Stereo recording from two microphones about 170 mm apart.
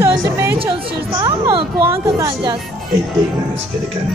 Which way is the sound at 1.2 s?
30° right (ahead or behind).